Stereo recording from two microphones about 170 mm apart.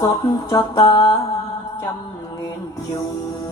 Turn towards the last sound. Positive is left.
turn(degrees=25)  # may be behind; listen again after turning